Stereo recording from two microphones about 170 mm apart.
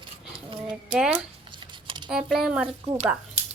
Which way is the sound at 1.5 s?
30° right (ahead or behind).